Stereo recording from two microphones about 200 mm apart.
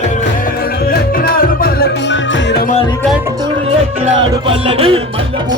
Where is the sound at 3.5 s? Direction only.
30° right (ahead or behind).